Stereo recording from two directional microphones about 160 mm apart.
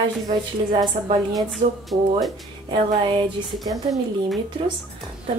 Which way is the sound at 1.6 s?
60° right (ahead or behind).